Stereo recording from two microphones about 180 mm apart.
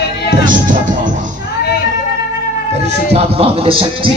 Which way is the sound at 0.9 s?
45° right (ahead or behind).